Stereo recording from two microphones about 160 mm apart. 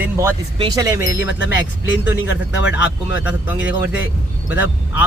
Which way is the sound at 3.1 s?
10° right (ahead or behind).